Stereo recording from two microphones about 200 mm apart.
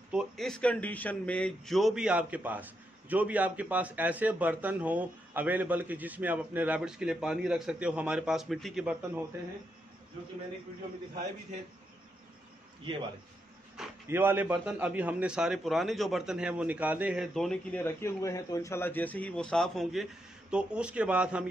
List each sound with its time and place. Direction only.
0.1 s speech: centre (ahead or behind)
12.9 s a man's voice: 25° right (ahead or behind)
14.0 s a man's voice: 10° right (ahead or behind)